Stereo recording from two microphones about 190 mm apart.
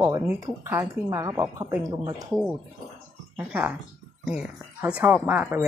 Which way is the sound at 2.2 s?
5° right (ahead or behind).